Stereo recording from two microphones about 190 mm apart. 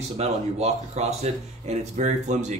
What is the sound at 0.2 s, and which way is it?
Speech, 35° right (ahead or behind).